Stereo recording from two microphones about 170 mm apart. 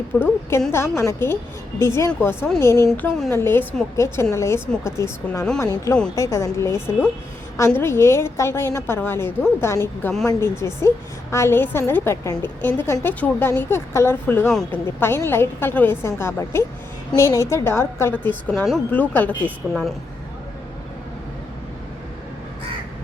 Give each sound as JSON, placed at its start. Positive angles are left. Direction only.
{"t": 0.1, "sound": "a woman's voice", "side_deg": 15}
{"t": 19.6, "sound": "speech", "side_deg": -5}